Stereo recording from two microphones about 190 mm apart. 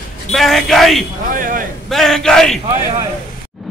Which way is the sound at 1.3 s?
45° right (ahead or behind).